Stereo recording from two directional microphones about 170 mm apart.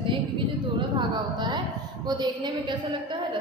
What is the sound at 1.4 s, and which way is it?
A woman's voice, 25° right (ahead or behind).